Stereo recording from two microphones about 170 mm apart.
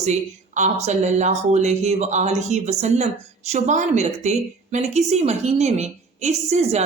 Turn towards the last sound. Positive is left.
turn(degrees=-40)  # may be behind; listen again after turning